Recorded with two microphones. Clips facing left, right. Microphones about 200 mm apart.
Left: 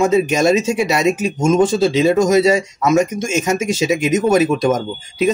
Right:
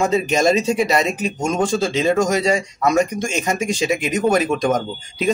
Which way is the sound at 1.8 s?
5° left (ahead or behind).